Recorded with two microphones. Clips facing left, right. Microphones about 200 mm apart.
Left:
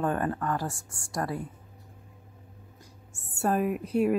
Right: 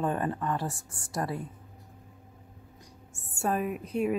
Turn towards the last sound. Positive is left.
turn(degrees=5)  # may be behind; listen again after turning